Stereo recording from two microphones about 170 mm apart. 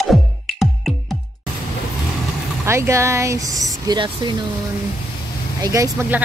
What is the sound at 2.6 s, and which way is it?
Speech, 15° right (ahead or behind).